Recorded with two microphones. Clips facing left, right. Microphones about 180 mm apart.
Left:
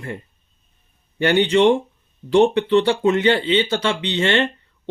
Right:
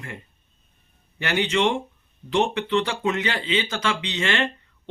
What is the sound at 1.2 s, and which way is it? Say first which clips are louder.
Speech: left 7 dB; 30° left (ahead or behind).